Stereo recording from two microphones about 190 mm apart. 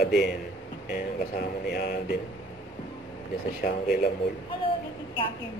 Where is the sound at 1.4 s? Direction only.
55° left (ahead or behind).